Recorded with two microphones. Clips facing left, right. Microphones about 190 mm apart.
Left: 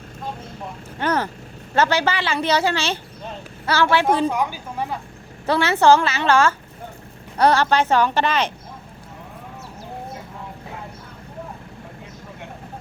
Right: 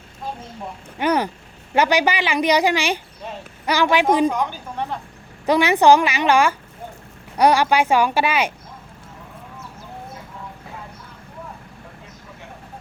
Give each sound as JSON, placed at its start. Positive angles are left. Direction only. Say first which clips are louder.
{"t": 0.9, "sound": "a woman's voice", "louder": "right 3 dB", "side_deg": -15}
{"t": 4.3, "sound": "a woman's voice", "louder": "even", "side_deg": 10}
{"t": 5.5, "sound": "a woman's voice", "louder": "right 2 dB", "side_deg": -15}